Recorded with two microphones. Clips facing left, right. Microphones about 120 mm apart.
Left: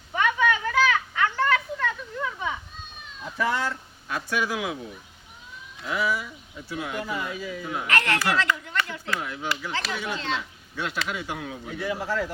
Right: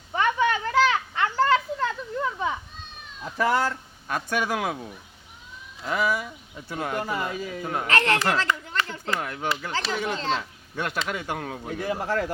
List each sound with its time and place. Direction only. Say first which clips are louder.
0.1 s a sound: right 1 dB; 30° right (ahead or behind)
3.3 s speech: right 3 dB; 40° right (ahead or behind)
5.9 s speech: right 2 dB; 50° right (ahead or behind)
7.9 s speech: right 2 dB; 30° right (ahead or behind)
9.2 s speech: right 2 dB; 50° right (ahead or behind)
9.7 s speech: right 3 dB; 30° right (ahead or behind)
10.8 s speech: right 1 dB; 50° right (ahead or behind)